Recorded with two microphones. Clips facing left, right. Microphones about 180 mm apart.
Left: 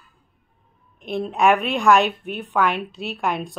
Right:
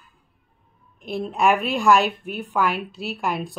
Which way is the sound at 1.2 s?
Centre (ahead or behind).